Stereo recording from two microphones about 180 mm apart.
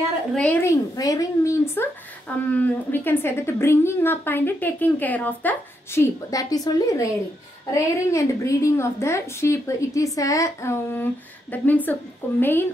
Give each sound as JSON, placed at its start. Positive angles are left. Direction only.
{"t": 0.3, "sound": "speech", "side_deg": 10}